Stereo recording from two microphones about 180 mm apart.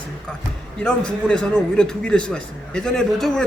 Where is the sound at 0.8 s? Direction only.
5° left (ahead or behind).